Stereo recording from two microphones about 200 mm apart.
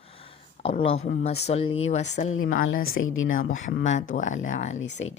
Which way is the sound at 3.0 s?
85° left.